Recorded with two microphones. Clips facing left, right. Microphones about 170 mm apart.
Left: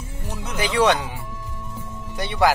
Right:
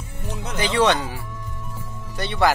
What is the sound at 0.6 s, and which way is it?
Speech, 10° left (ahead or behind).